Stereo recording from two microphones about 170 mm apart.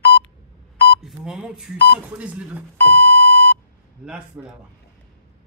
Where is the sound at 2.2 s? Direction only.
5° right (ahead or behind).